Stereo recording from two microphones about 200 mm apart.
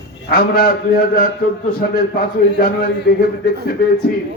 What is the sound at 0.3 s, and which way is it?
Speech, 50° left (ahead or behind).